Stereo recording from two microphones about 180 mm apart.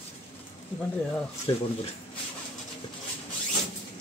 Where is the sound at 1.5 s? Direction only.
25° left (ahead or behind).